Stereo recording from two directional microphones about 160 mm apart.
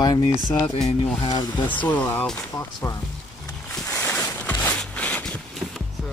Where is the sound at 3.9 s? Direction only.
15° left (ahead or behind).